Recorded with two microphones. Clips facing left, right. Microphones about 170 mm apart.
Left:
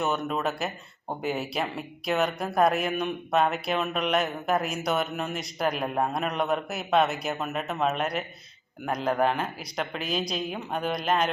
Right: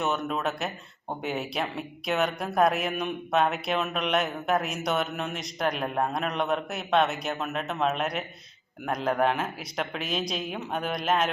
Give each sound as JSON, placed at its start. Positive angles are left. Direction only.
{"t": 0.0, "sound": "speech", "side_deg": 0}